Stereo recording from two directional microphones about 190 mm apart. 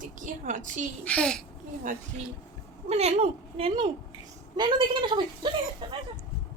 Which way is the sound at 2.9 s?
35° right (ahead or behind).